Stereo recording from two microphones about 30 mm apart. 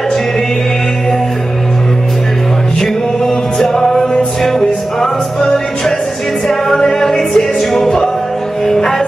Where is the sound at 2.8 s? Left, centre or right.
Centre.